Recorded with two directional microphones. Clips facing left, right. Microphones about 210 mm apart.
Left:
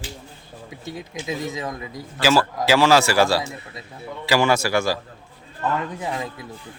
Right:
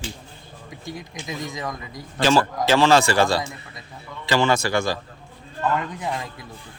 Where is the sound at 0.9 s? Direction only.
25° left (ahead or behind).